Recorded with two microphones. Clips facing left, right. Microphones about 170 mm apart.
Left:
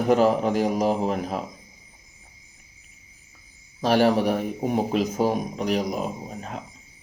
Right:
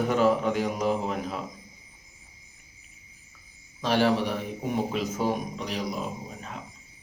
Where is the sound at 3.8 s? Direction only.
45° left (ahead or behind).